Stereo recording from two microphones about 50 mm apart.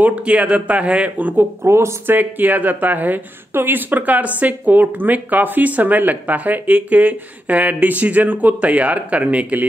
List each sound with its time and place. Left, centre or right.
0.0 s speech: right
1.6 s speech: right
2.0 s speech: right